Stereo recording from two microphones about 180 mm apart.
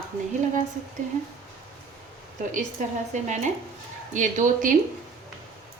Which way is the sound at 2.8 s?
45° right (ahead or behind).